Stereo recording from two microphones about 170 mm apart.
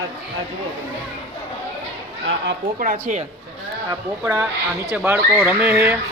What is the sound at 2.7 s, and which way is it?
Speech, 55° right (ahead or behind).